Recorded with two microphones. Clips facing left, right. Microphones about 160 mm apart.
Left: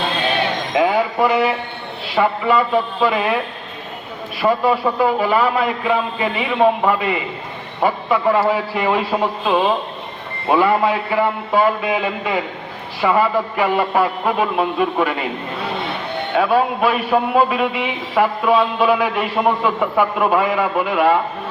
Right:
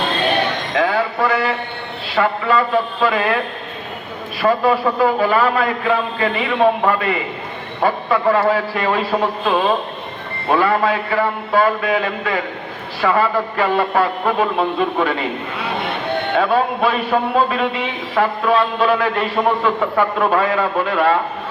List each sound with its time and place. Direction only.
0.7 s a man's voice: 15° left (ahead or behind)
4.4 s a man's voice: 15° left (ahead or behind)
16.3 s a man's voice: 5° left (ahead or behind)